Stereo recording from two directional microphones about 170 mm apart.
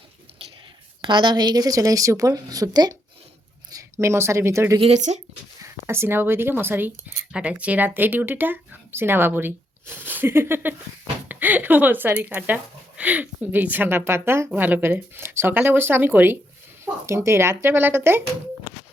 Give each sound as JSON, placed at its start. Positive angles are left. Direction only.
{"t": 1.0, "sound": "a woman's voice", "side_deg": -25}
{"t": 4.8, "sound": "speech", "side_deg": -40}
{"t": 5.6, "sound": "speech", "side_deg": -15}